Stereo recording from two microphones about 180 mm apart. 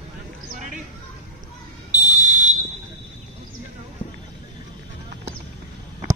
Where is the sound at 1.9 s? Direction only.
45° right (ahead or behind).